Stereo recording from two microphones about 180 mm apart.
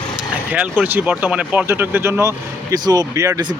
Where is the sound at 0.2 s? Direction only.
10° right (ahead or behind).